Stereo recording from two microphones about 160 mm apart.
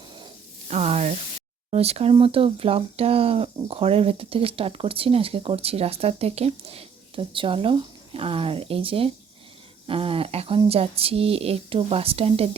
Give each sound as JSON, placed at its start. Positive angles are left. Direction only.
{"t": 0.7, "sound": "speech", "side_deg": -45}